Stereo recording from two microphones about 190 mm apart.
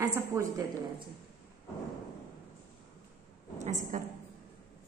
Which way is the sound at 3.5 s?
40° right (ahead or behind).